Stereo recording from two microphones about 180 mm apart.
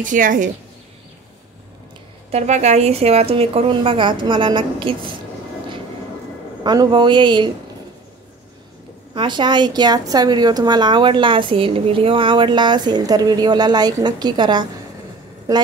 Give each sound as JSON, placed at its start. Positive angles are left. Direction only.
{"t": 0.0, "sound": "a woman's voice", "side_deg": -45}
{"t": 2.3, "sound": "a woman's voice", "side_deg": -40}
{"t": 6.6, "sound": "a woman's voice", "side_deg": -25}
{"t": 9.1, "sound": "a woman's voice", "side_deg": -25}